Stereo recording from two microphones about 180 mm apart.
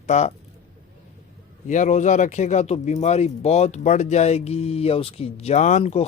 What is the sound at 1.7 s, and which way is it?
Speech, 45° left (ahead or behind).